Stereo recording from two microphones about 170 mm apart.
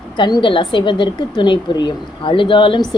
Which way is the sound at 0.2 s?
25° left (ahead or behind).